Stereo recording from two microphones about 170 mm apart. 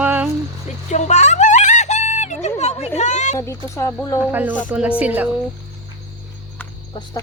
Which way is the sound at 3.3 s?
15° left (ahead or behind).